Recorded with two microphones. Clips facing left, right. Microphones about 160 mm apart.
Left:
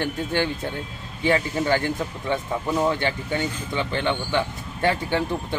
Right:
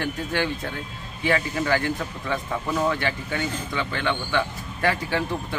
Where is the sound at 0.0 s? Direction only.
25° left (ahead or behind).